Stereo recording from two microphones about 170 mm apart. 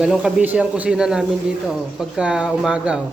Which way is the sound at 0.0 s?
5° right (ahead or behind).